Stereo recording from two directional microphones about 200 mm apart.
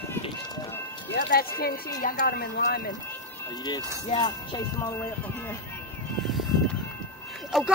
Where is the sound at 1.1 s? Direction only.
50° left (ahead or behind).